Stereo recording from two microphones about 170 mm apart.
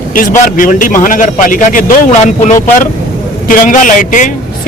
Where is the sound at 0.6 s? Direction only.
50° left (ahead or behind).